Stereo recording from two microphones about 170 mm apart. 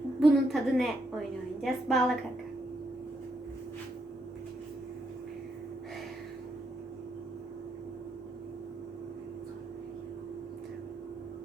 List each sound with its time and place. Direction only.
0.2 s a woman's voice: centre (ahead or behind)